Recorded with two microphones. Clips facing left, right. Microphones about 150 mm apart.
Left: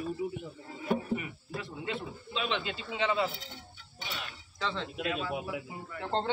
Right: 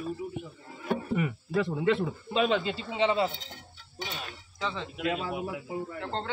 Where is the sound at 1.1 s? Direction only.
80° right.